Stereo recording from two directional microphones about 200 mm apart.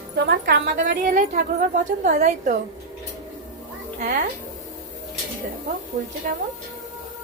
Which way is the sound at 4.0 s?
45° right (ahead or behind).